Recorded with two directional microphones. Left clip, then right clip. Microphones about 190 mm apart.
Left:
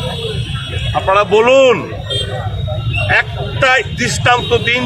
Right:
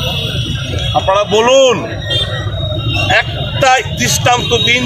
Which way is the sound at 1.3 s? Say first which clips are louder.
Even; 25° left (ahead or behind).